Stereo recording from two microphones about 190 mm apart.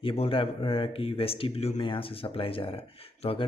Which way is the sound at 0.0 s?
30° left (ahead or behind).